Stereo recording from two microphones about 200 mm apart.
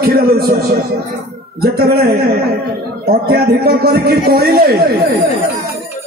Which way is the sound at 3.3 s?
50° right (ahead or behind).